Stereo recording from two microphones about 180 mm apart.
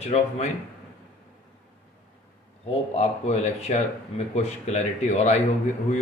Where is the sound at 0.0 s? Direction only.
35° left (ahead or behind).